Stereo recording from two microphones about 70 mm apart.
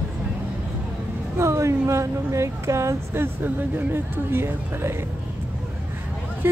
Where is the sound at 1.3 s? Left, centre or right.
Right.